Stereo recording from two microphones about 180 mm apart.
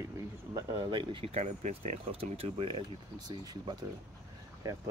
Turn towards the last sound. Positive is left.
turn(degrees=-20)  # may be behind; listen again after turning